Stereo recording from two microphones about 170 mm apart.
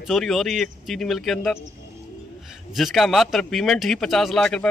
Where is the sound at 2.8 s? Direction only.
Centre (ahead or behind).